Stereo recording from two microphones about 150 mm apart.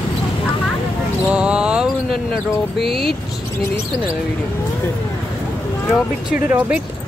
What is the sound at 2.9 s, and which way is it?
Speech, 90° left.